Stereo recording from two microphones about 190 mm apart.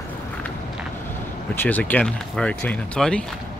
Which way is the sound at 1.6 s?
10° left (ahead or behind).